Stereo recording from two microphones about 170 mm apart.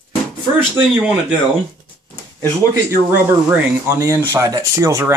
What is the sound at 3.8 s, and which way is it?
Speech, 15° right (ahead or behind).